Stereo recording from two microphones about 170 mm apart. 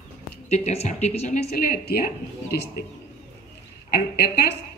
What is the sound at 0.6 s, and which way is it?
Speech, 45° left (ahead or behind).